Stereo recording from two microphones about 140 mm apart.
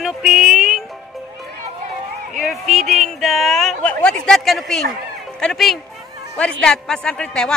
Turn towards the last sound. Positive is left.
turn(degrees=5)  # may be behind; listen again after turning